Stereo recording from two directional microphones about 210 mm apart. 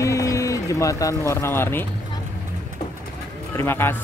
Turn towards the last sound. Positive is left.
turn(degrees=10)  # may be behind; listen again after turning